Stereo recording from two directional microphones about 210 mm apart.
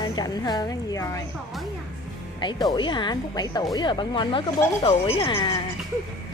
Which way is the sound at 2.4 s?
20° left (ahead or behind).